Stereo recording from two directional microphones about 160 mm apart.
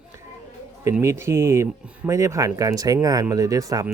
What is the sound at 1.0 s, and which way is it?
Speech, 15° right (ahead or behind).